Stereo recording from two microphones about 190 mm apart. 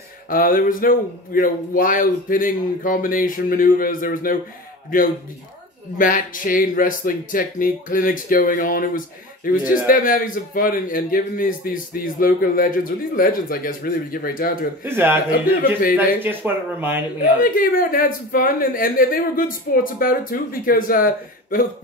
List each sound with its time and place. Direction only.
0.3 s speech: 45° left (ahead or behind)
5.9 s speech: 45° left (ahead or behind)
14.9 s speech: 10° right (ahead or behind)
17.4 s speech: 50° left (ahead or behind)